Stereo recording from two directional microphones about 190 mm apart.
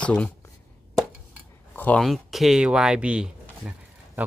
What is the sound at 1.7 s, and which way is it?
Speech, 10° left (ahead or behind).